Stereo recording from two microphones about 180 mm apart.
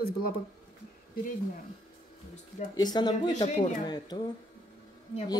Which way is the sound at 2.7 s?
25° left (ahead or behind).